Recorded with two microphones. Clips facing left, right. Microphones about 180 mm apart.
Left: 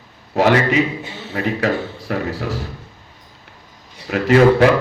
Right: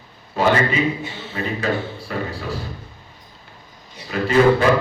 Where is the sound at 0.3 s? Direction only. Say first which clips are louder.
Left 3 dB; 80° left.